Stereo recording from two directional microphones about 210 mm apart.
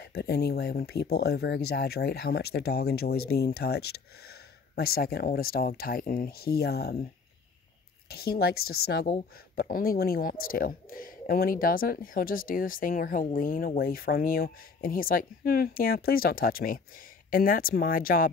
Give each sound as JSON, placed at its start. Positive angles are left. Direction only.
{"t": 0.0, "sound": "speech", "side_deg": 50}
{"t": 8.1, "sound": "speech", "side_deg": 45}